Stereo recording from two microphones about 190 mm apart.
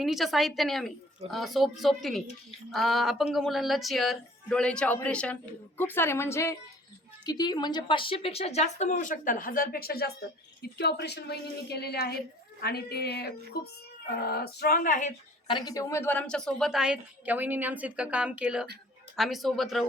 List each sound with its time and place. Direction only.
0.0 s a woman's voice: centre (ahead or behind); by 15.1 s 45° left (ahead or behind)
15.4 s speech: 20° left (ahead or behind); by 19.8 s centre (ahead or behind)